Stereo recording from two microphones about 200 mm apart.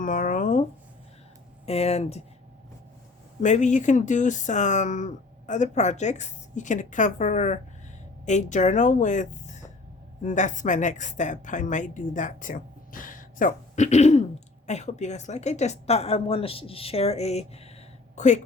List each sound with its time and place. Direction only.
0.0 s speech: 40° left (ahead or behind)
1.6 s speech: 30° left (ahead or behind)
3.4 s speech: 35° left (ahead or behind)